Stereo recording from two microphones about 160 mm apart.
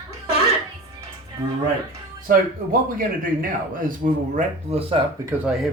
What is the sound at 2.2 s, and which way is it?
Speech, 60° right (ahead or behind).